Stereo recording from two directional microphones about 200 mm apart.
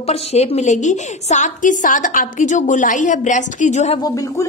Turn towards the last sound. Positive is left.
turn(degrees=15)  # may be behind; listen again after turning